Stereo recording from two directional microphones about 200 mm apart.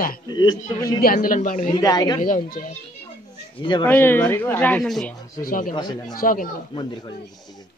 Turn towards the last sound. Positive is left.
turn(degrees=20)  # may be behind; listen again after turning